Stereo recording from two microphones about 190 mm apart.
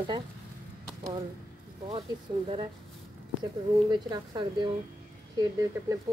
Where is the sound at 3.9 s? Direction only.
25° right (ahead or behind).